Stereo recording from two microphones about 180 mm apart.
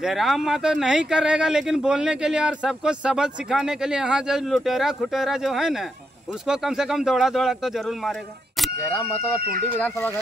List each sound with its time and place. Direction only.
0.0 s speech: centre (ahead or behind)
9.4 s speech: 55° right (ahead or behind)
9.8 s speech: 10° left (ahead or behind)